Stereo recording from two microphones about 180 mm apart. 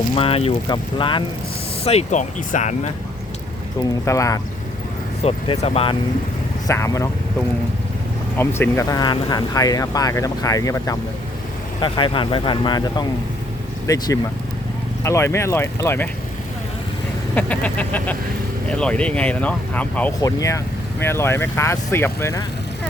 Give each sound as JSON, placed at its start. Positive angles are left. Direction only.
{"t": 0.2, "sound": "speech", "side_deg": 30}
{"t": 4.0, "sound": "speech", "side_deg": 15}
{"t": 5.2, "sound": "speech", "side_deg": 35}
{"t": 6.7, "sound": "speech", "side_deg": 15}
{"t": 8.4, "sound": "speech", "side_deg": 10}
{"t": 17.3, "sound": "speech", "side_deg": 10}